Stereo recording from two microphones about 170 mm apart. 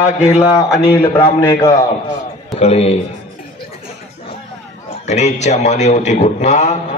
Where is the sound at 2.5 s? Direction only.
35° left (ahead or behind).